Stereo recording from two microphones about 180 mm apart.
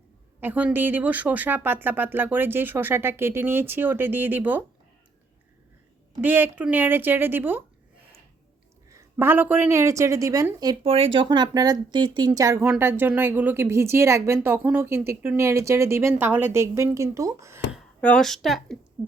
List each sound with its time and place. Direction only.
0.3 s speech: 10° right (ahead or behind)
6.2 s speech: 10° right (ahead or behind)
8.9 s speech: 15° right (ahead or behind)
10.8 s speech: 30° right (ahead or behind); by 17.7 s 15° right (ahead or behind)
17.7 s speech: 5° left (ahead or behind)